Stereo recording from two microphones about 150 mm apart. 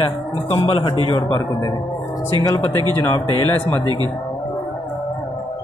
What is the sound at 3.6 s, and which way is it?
Speech, 15° left (ahead or behind).